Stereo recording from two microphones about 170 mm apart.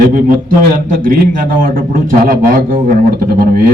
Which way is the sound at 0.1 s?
55° right (ahead or behind).